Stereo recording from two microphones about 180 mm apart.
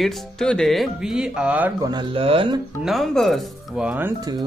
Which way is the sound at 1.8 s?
25° right (ahead or behind).